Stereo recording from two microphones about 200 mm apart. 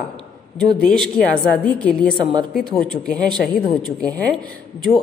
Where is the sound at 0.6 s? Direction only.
5° left (ahead or behind).